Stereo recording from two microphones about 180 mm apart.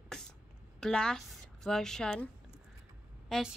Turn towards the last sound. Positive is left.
turn(degrees=0)  # may be behind; listen again after turning